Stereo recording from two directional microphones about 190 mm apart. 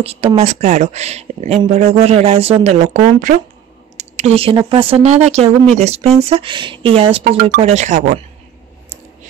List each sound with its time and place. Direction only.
0.0 s speech: 30° right (ahead or behind)